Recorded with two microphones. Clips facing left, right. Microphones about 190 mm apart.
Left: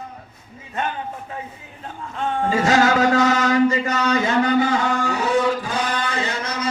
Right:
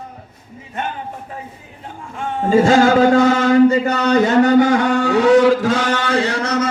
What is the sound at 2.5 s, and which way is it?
Speech, 30° right (ahead or behind).